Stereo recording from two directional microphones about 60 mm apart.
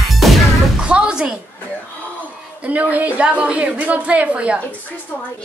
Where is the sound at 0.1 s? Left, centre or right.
Centre.